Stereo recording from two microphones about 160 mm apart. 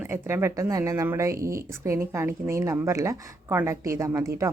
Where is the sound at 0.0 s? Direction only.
15° right (ahead or behind).